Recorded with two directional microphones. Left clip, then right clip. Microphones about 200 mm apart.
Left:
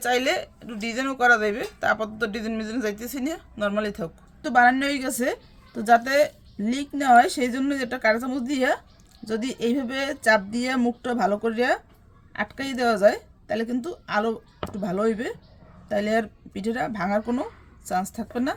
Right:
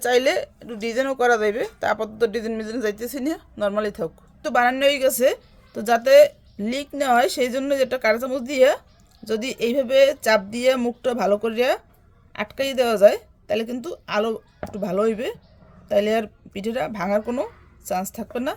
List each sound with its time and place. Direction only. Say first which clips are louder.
0.0 s speech: right 4 dB; 30° right (ahead or behind)